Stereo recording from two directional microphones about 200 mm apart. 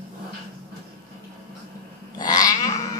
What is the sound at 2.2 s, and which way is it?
Cat, 20° left (ahead or behind).